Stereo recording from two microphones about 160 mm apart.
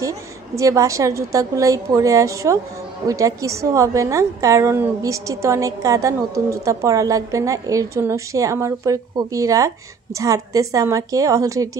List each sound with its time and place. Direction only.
0.6 s a woman's voice: 20° right (ahead or behind)